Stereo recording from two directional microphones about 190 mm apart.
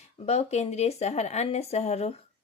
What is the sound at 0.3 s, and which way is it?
Speech, 35° left (ahead or behind).